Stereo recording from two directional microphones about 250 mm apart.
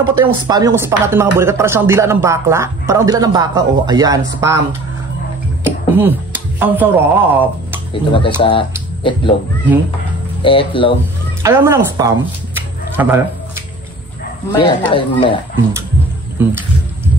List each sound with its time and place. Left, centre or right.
0.2 s speech: centre
5.6 s music: centre
6.6 s speech: centre
7.9 s speech: centre
10.4 s speech: left
11.4 s speech: centre
14.6 s speech: left
16.3 s music: centre